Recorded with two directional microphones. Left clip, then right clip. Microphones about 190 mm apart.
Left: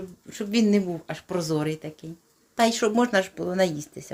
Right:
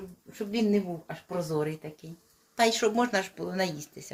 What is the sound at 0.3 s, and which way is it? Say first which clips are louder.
Speech: left 4 dB; 65° left (ahead or behind).